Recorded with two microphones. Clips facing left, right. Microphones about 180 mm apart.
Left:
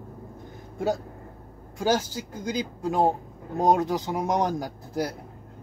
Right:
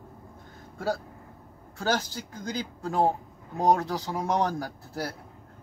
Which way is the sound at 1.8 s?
15° left (ahead or behind).